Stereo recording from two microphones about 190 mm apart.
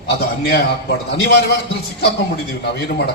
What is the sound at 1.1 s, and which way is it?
Speech, 55° left (ahead or behind).